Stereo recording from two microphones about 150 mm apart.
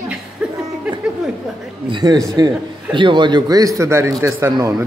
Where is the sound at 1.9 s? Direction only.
25° right (ahead or behind).